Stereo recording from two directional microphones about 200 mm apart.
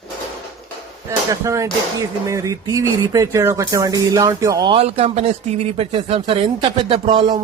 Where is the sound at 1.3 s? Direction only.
15° right (ahead or behind).